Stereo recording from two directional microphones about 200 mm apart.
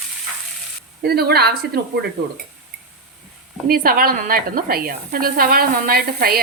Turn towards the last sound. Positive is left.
turn(degrees=-50)  # may be behind; listen again after turning